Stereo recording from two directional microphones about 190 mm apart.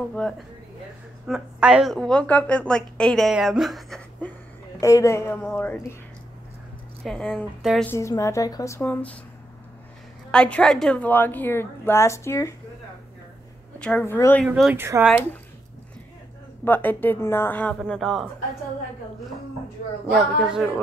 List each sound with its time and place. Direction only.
0.2 s a woman's voice: 5° left (ahead or behind)
4.7 s a woman's voice: 15° left (ahead or behind)
7.0 s a woman's voice: 5° left (ahead or behind)
7.9 s a woman's voice: 15° left (ahead or behind)
10.3 s a woman's voice: 5° left (ahead or behind)
13.7 s a woman's voice: 5° left (ahead or behind)
14.4 s speech: 5° right (ahead or behind)
16.6 s a woman's voice: 10° left (ahead or behind)
20.1 s a woman's voice: centre (ahead or behind)